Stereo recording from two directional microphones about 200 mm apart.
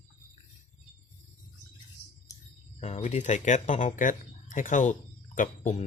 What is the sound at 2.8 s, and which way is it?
Speech, 35° left (ahead or behind).